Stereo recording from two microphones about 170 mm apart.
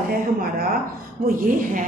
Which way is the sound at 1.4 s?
55° right (ahead or behind).